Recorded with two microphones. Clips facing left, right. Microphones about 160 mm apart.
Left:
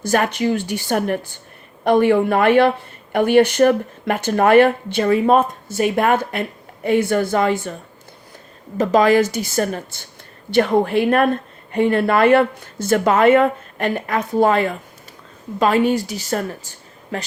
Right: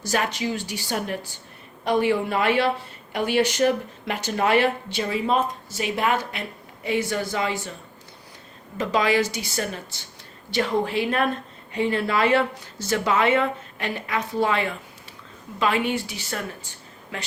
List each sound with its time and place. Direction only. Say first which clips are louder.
0.0 s speech: left 7 dB; 55° left (ahead or behind)
8.8 s a woman's voice: left 8 dB; 45° left (ahead or behind)